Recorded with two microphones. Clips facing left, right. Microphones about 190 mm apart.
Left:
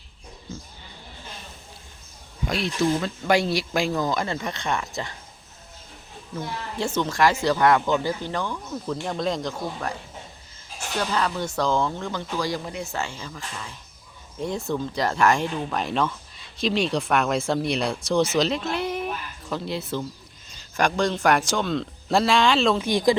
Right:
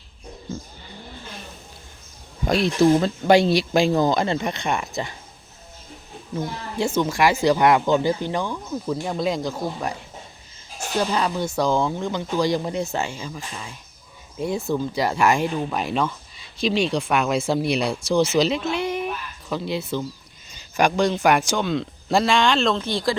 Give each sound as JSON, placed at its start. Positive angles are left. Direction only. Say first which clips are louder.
{"t": 2.4, "sound": "speech", "louder": "right 6 dB", "side_deg": -40}
{"t": 3.2, "sound": "speech", "louder": "right 5 dB", "side_deg": -25}
{"t": 6.7, "sound": "speech", "louder": "right 3 dB", "side_deg": -10}
{"t": 11.0, "sound": "speech", "louder": "right 2 dB", "side_deg": -20}